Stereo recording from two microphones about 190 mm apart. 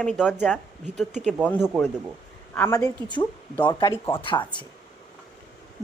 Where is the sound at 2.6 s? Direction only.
15° left (ahead or behind).